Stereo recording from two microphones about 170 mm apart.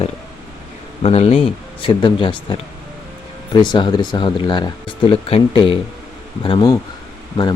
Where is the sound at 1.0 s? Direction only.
35° left (ahead or behind).